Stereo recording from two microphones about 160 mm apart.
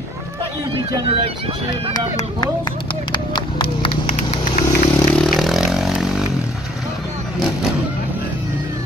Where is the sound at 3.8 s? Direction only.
40° left (ahead or behind).